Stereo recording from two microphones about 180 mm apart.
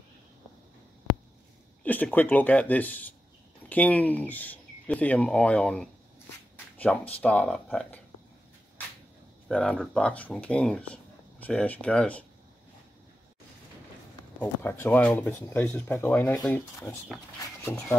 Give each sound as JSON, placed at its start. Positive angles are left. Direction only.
{"t": 1.8, "sound": "speech", "side_deg": 10}
{"t": 9.5, "sound": "speech", "side_deg": 5}
{"t": 14.4, "sound": "speech", "side_deg": 10}